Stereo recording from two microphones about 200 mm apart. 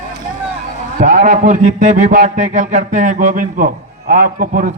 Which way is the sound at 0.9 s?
45° right (ahead or behind).